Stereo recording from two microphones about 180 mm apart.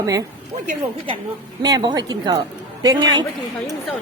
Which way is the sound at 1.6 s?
20° right (ahead or behind).